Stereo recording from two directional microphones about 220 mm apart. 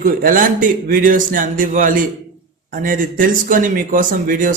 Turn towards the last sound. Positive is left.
turn(degrees=-40)  # may be behind; listen again after turning